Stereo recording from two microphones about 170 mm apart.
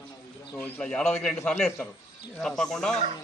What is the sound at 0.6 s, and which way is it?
Speech, 5° left (ahead or behind).